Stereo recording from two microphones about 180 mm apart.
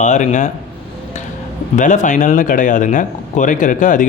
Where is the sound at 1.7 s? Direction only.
45° left (ahead or behind).